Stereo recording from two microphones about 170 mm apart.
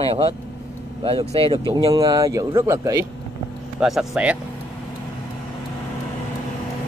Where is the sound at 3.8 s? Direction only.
5° right (ahead or behind).